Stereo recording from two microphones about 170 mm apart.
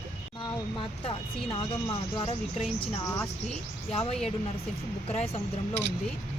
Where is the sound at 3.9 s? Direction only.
35° left (ahead or behind).